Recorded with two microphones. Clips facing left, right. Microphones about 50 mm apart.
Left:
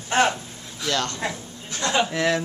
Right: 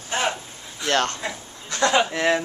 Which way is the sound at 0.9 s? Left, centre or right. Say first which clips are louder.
Right 4 dB; right.